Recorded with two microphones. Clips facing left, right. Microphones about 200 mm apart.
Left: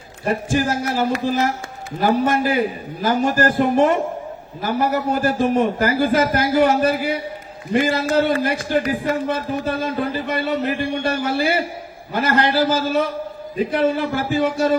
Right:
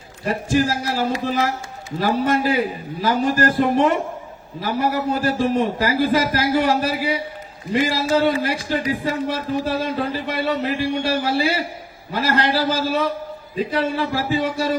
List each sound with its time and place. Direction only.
0.3 s a man's voice: 55° left (ahead or behind)